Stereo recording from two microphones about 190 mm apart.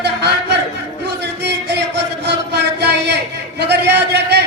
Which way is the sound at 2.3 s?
60° right (ahead or behind).